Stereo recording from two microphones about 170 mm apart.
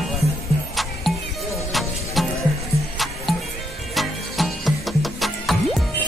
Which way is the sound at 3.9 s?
Centre (ahead or behind).